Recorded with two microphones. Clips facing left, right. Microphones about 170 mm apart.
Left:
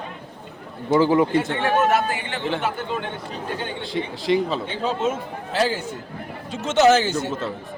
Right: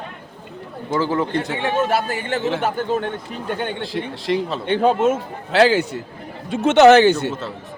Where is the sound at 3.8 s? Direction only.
Centre (ahead or behind).